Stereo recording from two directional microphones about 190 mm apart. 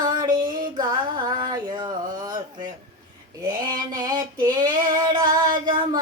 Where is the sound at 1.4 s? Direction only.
25° right (ahead or behind).